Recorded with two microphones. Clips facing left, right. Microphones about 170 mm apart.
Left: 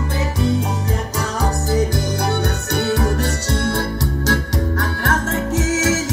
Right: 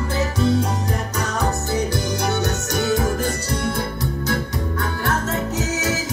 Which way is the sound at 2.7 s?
65° left (ahead or behind).